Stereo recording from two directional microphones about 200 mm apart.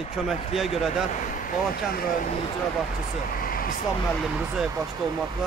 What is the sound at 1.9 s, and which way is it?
Speech, 45° left (ahead or behind).